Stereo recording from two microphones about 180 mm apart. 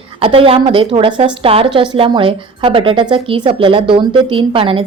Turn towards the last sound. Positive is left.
turn(degrees=-30)  # may be behind; listen again after turning